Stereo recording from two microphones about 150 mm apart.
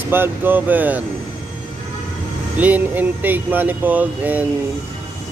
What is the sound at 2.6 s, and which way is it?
Speech, 10° right (ahead or behind).